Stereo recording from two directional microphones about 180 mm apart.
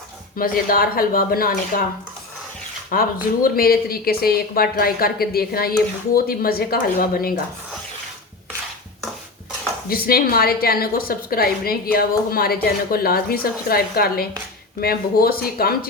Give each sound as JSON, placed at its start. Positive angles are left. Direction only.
{"t": 0.3, "sound": "speech", "side_deg": 50}
{"t": 2.9, "sound": "a woman's voice", "side_deg": 50}
{"t": 9.9, "sound": "a woman's voice", "side_deg": 55}